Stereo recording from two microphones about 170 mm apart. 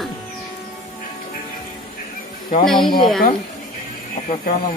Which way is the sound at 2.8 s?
30° left (ahead or behind).